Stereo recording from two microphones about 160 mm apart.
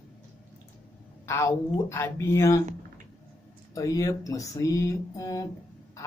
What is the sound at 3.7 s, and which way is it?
Speech, 20° left (ahead or behind).